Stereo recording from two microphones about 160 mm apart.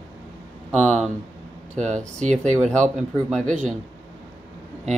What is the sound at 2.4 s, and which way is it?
Speech, 50° right (ahead or behind).